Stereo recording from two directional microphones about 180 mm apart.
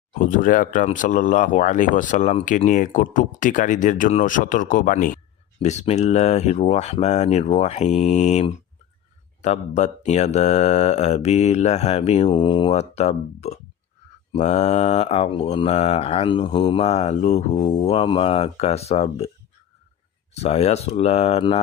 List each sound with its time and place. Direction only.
0.1 s speech: 45° left (ahead or behind)
5.6 s mantra: 40° left (ahead or behind)
20.3 s mantra: 35° left (ahead or behind)